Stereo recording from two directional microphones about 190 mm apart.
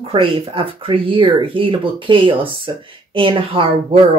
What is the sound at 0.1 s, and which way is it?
Speech, 30° right (ahead or behind).